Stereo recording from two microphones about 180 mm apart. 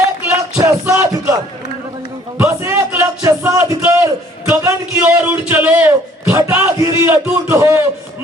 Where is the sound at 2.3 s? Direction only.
15° right (ahead or behind).